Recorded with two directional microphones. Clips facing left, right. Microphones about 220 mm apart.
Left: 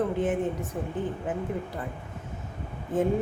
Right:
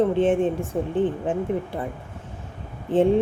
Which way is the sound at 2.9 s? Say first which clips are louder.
Right 7 dB; 30° right (ahead or behind).